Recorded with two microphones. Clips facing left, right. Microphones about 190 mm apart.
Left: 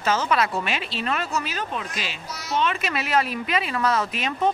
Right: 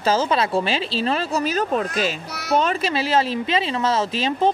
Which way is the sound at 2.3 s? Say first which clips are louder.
Right 7 dB; 65° right (ahead or behind).